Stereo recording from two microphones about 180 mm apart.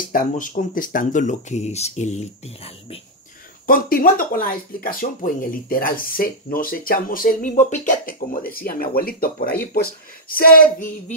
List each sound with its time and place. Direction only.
0.1 s speech: 45° left (ahead or behind)
3.6 s speech: 50° left (ahead or behind)